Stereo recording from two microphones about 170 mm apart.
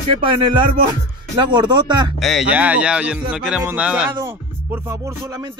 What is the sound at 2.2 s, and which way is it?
Speech, 5° right (ahead or behind).